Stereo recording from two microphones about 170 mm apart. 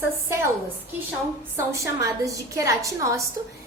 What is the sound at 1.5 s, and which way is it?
A woman's voice, 20° right (ahead or behind).